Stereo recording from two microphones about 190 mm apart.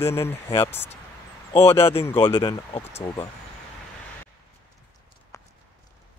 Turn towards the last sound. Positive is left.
turn(degrees=15)  # may be behind; listen again after turning